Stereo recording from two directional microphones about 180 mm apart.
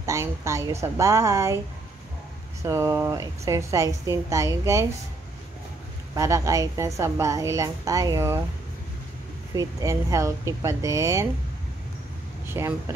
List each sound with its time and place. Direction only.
0.0 s a woman's voice: 15° right (ahead or behind)
2.6 s a woman's voice: 15° right (ahead or behind)
6.1 s a woman's voice: 15° right (ahead or behind)
9.5 s a woman's voice: 20° right (ahead or behind)
12.4 s speech: 15° right (ahead or behind)